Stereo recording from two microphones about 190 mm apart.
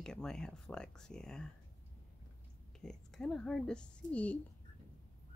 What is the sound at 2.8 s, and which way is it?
Speech, centre (ahead or behind).